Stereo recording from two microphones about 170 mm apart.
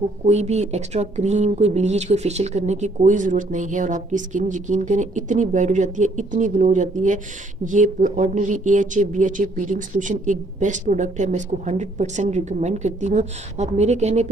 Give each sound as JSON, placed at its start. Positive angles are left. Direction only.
{"t": 0.2, "sound": "speech", "side_deg": -40}